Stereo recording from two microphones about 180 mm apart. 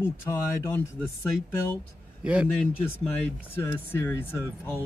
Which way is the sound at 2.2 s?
5° right (ahead or behind).